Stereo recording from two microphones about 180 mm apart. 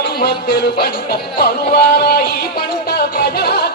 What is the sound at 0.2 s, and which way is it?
Music, 60° left (ahead or behind).